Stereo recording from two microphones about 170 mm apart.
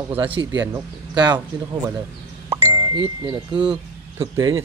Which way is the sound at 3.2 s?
25° right (ahead or behind).